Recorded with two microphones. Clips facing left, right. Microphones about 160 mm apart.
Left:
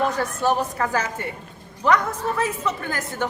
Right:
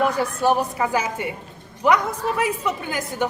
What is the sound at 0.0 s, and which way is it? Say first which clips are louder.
A woman's voice: right 2 dB; 10° right (ahead or behind).